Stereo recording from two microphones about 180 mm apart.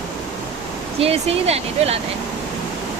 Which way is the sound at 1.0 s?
35° right (ahead or behind).